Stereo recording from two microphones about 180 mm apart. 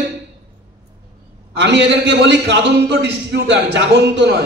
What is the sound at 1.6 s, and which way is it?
A man's voice, 70° right (ahead or behind).